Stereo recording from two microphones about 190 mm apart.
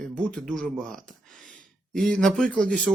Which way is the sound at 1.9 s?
5° left (ahead or behind).